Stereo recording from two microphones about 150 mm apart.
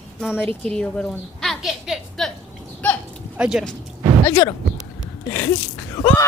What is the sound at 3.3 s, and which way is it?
Speech, 5° right (ahead or behind).